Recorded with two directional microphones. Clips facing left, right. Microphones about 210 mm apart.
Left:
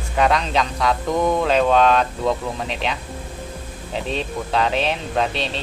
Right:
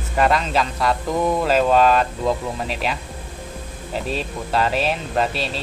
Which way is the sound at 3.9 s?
5° right (ahead or behind).